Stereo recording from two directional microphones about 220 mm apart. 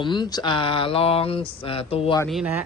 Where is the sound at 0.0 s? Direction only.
20° left (ahead or behind).